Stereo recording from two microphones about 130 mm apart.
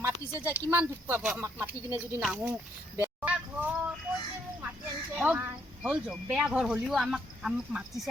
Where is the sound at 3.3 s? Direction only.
10° right (ahead or behind).